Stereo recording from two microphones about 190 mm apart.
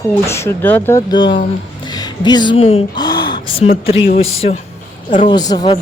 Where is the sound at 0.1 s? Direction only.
15° left (ahead or behind).